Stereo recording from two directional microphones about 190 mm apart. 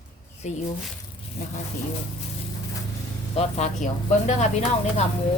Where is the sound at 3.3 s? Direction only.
35° left (ahead or behind).